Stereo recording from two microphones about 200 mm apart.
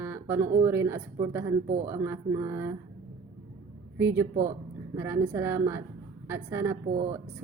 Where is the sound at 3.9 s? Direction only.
15° right (ahead or behind).